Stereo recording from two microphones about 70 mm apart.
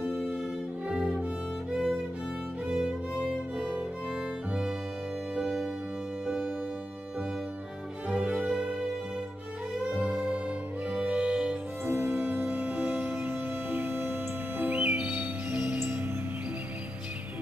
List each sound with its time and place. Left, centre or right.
0.0 s violin: centre
1.7 s music: centre
2.6 s music: centre
5.4 s music: centre
8.1 s music: centre
9.9 s music: centre
11.8 s music: right
14.6 s music: centre